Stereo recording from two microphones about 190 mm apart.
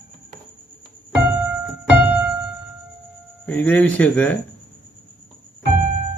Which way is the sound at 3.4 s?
10° left (ahead or behind).